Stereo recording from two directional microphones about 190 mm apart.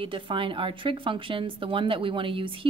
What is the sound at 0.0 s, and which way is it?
A woman's voice, 25° right (ahead or behind).